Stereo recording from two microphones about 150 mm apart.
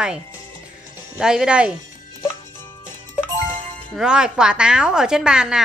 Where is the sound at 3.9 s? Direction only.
5° right (ahead or behind).